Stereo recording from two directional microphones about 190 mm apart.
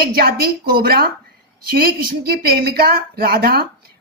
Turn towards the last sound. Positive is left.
turn(degrees=-55)  # may be behind; listen again after turning